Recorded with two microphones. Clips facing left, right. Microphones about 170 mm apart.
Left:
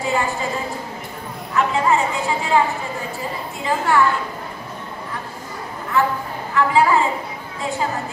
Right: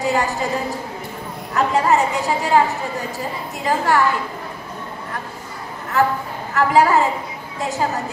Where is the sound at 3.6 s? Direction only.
40° right (ahead or behind).